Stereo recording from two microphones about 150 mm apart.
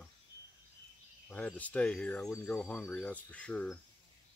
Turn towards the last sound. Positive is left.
turn(degrees=10)  # may be behind; listen again after turning